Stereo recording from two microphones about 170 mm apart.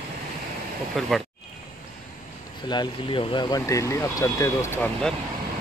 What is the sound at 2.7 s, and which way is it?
Speech, 30° left (ahead or behind).